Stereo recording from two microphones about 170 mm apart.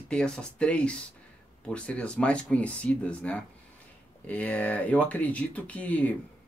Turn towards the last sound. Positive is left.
turn(degrees=10)  # may be behind; listen again after turning